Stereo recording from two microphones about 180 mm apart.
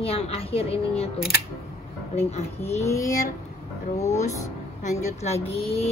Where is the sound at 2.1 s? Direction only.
35° left (ahead or behind).